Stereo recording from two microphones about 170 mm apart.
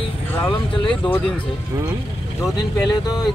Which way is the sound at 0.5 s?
30° left (ahead or behind).